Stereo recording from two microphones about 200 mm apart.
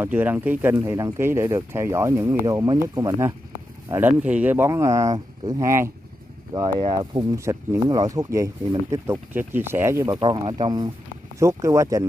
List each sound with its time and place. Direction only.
0.0 s speech: 10° right (ahead or behind)
10.1 s speech: 25° right (ahead or behind)